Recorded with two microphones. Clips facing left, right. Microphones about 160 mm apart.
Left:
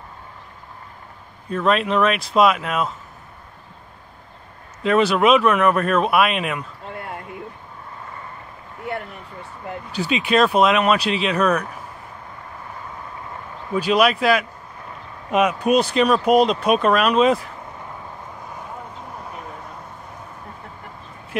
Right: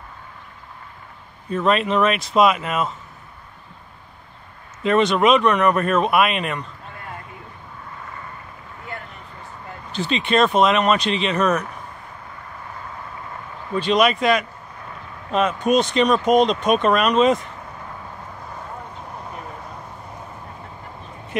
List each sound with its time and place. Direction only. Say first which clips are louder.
1.5 s speech: even; centre (ahead or behind)
4.8 s speech: even; centre (ahead or behind)
8.9 s a sound: left 7 dB; 75° left (ahead or behind)
9.9 s speech: left 1 dB; 5° left (ahead or behind)
13.7 s speech: even; 5° left (ahead or behind)